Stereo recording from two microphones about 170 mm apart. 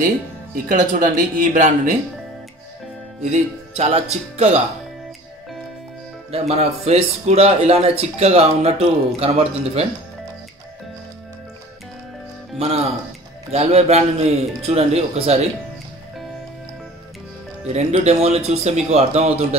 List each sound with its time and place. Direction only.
0.7 s speech: 50° right (ahead or behind)
3.2 s speech: 40° right (ahead or behind)
6.3 s speech: 35° right (ahead or behind)
12.5 s speech: 35° right (ahead or behind)
17.7 s speech: 40° right (ahead or behind)